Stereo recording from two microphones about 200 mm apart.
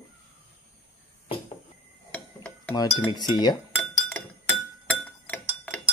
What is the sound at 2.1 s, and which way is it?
Dishes, 5° left (ahead or behind).